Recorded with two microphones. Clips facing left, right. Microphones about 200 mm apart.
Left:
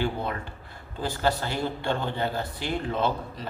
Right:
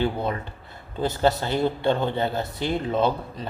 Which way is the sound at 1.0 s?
20° right (ahead or behind).